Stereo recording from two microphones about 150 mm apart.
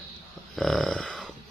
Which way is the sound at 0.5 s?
Centre (ahead or behind).